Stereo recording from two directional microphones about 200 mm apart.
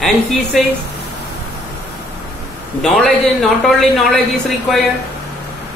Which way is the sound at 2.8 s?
Centre (ahead or behind).